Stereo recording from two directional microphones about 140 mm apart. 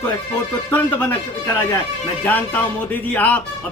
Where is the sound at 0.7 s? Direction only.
15° left (ahead or behind).